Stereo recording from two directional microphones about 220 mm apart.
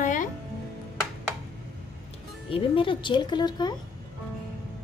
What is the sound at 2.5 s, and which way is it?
Speech, 25° left (ahead or behind).